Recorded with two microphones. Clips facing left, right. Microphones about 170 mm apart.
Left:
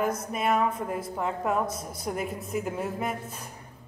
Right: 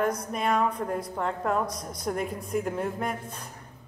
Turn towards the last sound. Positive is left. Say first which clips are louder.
# even
turn(degrees=5)  # may be behind; listen again after turning